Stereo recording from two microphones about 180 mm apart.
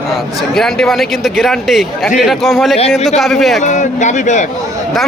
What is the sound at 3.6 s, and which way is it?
Speech, 40° left (ahead or behind).